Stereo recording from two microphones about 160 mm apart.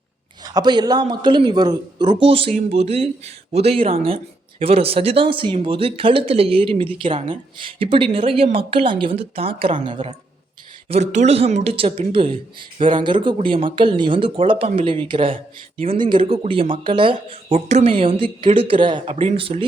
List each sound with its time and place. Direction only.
0.4 s speech: 25° right (ahead or behind)
10.8 s speech: 45° right (ahead or behind)